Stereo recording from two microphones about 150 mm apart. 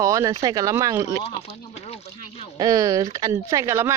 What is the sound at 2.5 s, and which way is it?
Speech, 25° right (ahead or behind).